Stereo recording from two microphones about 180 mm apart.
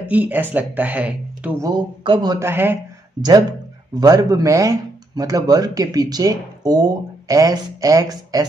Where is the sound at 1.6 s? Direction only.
20° right (ahead or behind).